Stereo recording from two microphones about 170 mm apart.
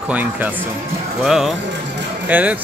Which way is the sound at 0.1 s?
10° right (ahead or behind).